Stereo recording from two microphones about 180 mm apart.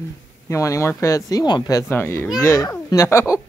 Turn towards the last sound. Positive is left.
turn(degrees=15)  # may be behind; listen again after turning